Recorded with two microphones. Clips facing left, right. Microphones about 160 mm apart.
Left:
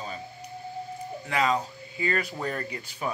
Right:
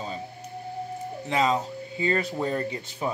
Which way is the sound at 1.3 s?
25° right (ahead or behind).